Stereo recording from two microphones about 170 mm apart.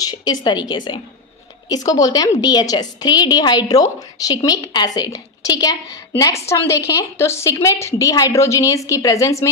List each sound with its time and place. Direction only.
0.0 s a woman's voice: 25° left (ahead or behind)